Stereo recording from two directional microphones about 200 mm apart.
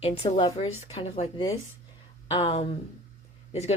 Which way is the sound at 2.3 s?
25° left (ahead or behind).